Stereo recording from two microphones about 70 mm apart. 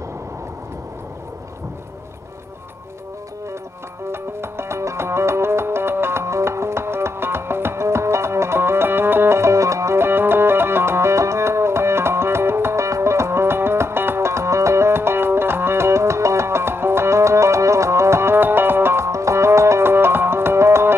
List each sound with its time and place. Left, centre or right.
4.1 s music: right